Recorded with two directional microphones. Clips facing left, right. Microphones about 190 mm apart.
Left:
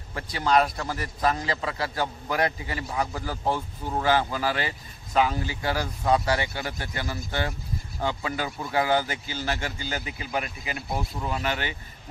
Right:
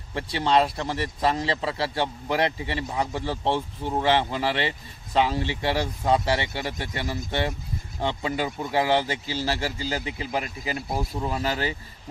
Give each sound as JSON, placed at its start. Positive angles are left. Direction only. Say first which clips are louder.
{"t": 0.1, "sound": "a man's voice", "louder": "right 1 dB", "side_deg": -25}